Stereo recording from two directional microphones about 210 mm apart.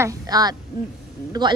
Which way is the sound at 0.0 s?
20° right (ahead or behind).